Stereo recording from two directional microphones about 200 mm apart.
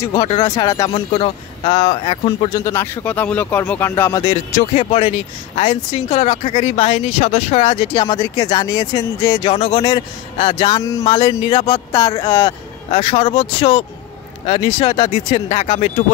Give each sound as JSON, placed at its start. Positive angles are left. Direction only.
{"t": 0.0, "sound": "a man's voice", "side_deg": 20}
{"t": 4.6, "sound": "speech", "side_deg": 35}
{"t": 7.9, "sound": "a man's voice", "side_deg": 20}
{"t": 9.5, "sound": "a man's voice", "side_deg": 30}